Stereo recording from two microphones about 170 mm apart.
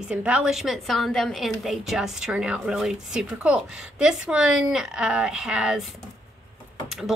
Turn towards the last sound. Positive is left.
turn(degrees=0)  # may be behind; listen again after turning